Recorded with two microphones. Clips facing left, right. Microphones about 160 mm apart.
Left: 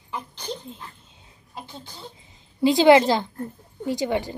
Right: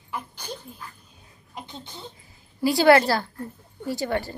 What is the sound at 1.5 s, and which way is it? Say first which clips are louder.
Speech: even; 20° right (ahead or behind).